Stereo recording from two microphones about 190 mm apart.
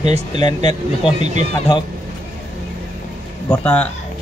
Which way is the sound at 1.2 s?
40° right (ahead or behind).